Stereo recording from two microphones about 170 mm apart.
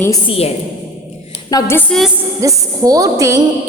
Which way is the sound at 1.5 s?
20° left (ahead or behind).